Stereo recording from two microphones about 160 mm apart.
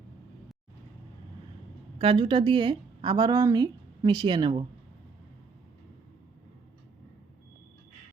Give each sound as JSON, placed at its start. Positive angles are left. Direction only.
{"t": 2.0, "sound": "a woman's voice", "side_deg": -35}